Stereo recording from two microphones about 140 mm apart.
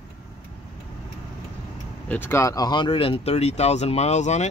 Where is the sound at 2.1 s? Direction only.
15° left (ahead or behind).